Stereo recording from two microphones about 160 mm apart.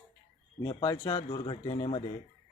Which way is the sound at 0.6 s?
25° left (ahead or behind).